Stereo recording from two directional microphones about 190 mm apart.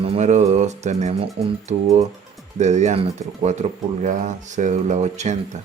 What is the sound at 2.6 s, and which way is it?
Speech, 40° right (ahead or behind).